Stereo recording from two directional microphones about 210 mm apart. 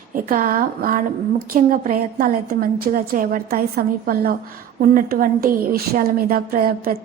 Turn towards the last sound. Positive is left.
turn(degrees=-45)  # may be behind; listen again after turning